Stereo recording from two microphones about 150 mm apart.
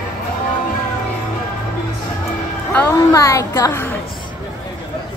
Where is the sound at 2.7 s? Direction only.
10° left (ahead or behind).